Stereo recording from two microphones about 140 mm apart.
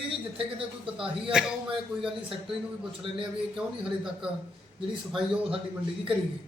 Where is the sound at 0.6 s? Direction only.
40° right (ahead or behind).